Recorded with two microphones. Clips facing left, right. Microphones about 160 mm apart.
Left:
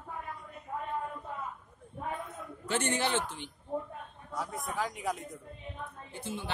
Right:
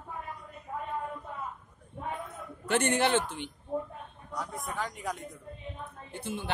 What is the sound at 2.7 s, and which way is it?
Speech, 60° right (ahead or behind).